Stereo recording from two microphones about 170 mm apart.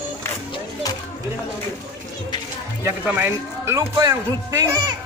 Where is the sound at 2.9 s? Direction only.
10° right (ahead or behind).